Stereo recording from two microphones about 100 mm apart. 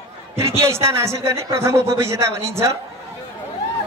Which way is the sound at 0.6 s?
30° right (ahead or behind).